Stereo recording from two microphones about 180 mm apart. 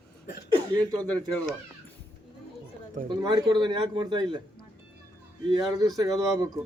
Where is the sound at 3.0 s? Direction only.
25° right (ahead or behind).